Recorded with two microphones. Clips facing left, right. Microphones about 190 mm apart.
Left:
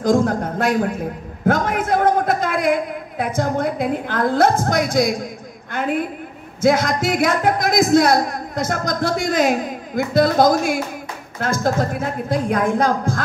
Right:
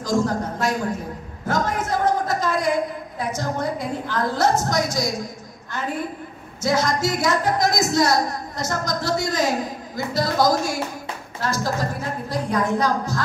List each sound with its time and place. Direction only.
0.0 s a man's voice: 55° left (ahead or behind)